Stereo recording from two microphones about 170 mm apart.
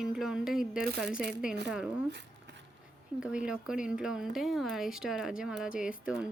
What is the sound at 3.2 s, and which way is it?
Speech, 5° right (ahead or behind).